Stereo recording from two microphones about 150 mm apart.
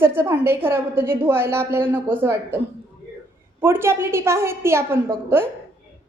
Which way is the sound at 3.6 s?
15° right (ahead or behind).